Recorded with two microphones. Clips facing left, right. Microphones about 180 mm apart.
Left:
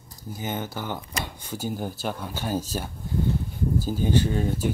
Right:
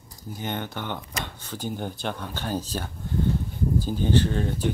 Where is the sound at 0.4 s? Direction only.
5° left (ahead or behind).